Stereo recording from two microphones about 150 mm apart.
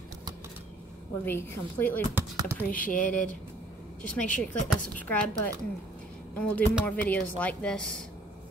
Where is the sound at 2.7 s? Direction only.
65° left (ahead or behind).